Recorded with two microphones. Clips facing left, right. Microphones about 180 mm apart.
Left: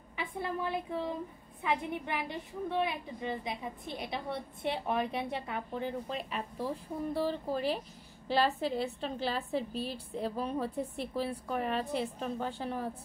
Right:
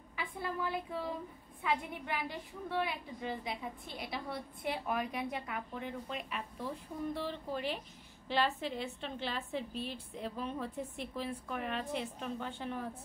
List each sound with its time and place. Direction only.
0.1 s a woman's voice: 20° left (ahead or behind)